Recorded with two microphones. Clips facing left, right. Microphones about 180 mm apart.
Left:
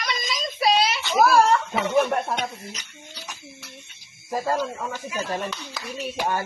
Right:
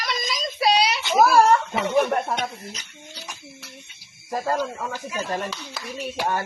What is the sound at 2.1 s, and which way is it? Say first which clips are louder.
Speech: right 1 dB; centre (ahead or behind).